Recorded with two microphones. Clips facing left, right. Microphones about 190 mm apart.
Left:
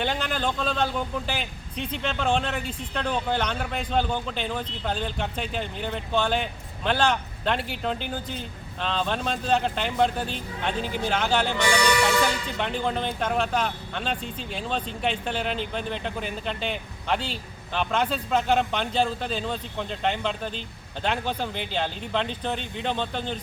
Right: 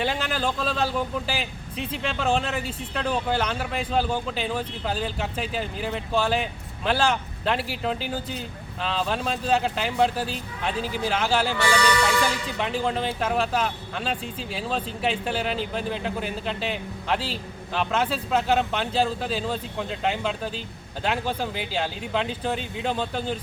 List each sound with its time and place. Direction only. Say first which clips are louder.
0.0 s a man's voice: right 1 dB; 5° right (ahead or behind)
11.5 s music: even; 15° left (ahead or behind)
12.0 s a man's voice: left 1 dB; centre (ahead or behind)